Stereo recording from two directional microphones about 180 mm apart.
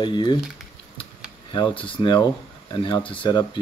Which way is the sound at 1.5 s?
25° left (ahead or behind).